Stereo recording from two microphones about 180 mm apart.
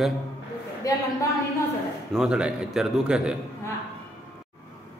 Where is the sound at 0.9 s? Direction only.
20° left (ahead or behind).